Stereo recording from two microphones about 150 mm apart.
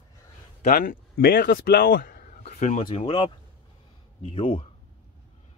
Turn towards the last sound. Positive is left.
turn(degrees=40)  # may be behind; listen again after turning